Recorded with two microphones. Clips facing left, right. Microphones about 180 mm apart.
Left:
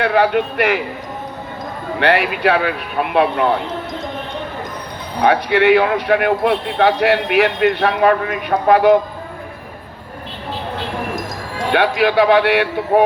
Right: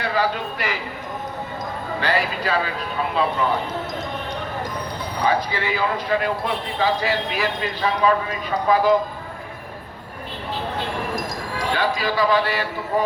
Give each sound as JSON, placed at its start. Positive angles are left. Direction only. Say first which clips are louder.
{"t": 0.0, "sound": "speech", "louder": "left 8 dB", "side_deg": 65}
{"t": 2.0, "sound": "speech", "louder": "left 8 dB", "side_deg": 65}
{"t": 5.2, "sound": "a man's voice", "louder": "left 9 dB", "side_deg": 70}
{"t": 11.7, "sound": "a man's voice", "louder": "left 8 dB", "side_deg": 65}